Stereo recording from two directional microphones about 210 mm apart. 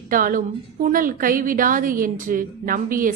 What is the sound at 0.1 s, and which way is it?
A woman's voice, 40° right (ahead or behind).